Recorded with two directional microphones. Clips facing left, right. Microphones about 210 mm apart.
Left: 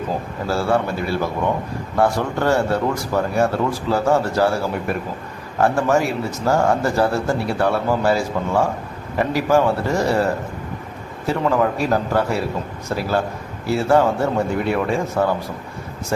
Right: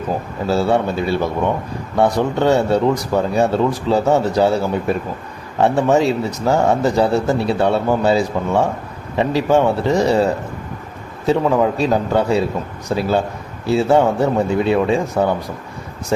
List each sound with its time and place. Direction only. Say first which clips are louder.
0.4 s speech: right 3 dB; 20° right (ahead or behind)